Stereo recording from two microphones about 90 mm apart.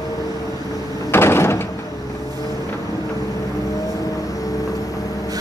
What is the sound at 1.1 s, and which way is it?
Door, 25° left (ahead or behind).